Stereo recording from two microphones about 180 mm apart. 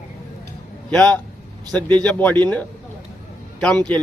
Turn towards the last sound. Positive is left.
turn(degrees=5)  # may be behind; listen again after turning